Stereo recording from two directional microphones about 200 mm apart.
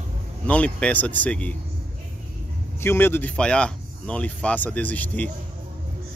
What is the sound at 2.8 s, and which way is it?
Speech, 10° left (ahead or behind).